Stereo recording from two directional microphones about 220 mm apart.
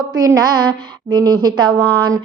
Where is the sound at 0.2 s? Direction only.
15° right (ahead or behind).